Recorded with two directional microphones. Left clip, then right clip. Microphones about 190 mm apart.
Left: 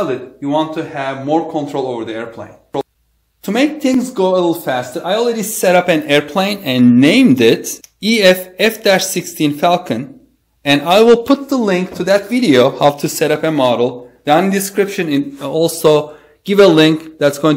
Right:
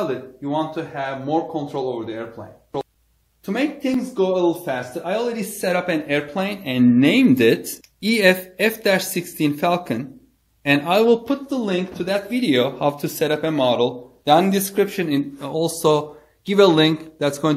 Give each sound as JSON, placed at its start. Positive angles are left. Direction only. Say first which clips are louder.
{"t": 0.4, "sound": "a man's voice", "louder": "left 8 dB", "side_deg": 30}
{"t": 3.4, "sound": "speech", "louder": "left 8 dB", "side_deg": 50}
{"t": 5.0, "sound": "speech", "louder": "left 8 dB", "side_deg": 30}
{"t": 5.6, "sound": "speech", "louder": "left 10 dB", "side_deg": 45}
{"t": 6.6, "sound": "speech", "louder": "left 3 dB", "side_deg": 25}
{"t": 7.0, "sound": "a man's voice", "louder": "left 5 dB", "side_deg": 10}
{"t": 11.2, "sound": "a man's voice", "louder": "left 9 dB", "side_deg": 40}
{"t": 12.9, "sound": "a man's voice", "louder": "left 6 dB", "side_deg": 15}
{"t": 14.2, "sound": "a man's voice", "louder": "left 3 dB", "side_deg": -5}